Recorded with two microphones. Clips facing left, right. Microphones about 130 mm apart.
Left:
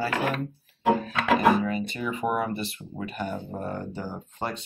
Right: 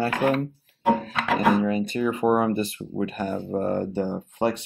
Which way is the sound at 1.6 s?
45° right (ahead or behind).